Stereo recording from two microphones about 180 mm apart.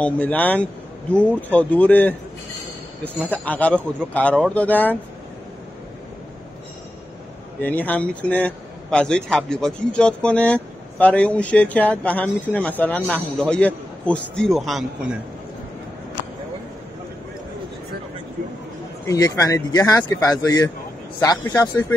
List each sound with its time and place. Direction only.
0.0 s a man's voice: 10° left (ahead or behind)
7.6 s a man's voice: 10° left (ahead or behind)
19.0 s speech: 20° left (ahead or behind)